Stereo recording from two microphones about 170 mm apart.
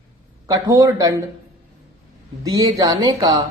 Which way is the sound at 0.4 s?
20° right (ahead or behind).